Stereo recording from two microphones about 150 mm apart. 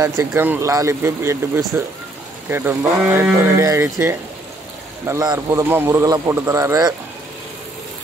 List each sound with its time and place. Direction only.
0.0 s speech: 20° right (ahead or behind)